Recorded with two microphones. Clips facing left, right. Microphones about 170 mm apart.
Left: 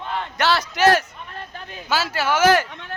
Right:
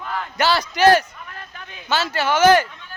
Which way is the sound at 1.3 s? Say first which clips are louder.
Left 3 dB; 30° left (ahead or behind).